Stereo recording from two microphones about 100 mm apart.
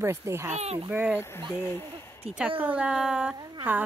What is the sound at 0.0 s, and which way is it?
Speech, 30° right (ahead or behind).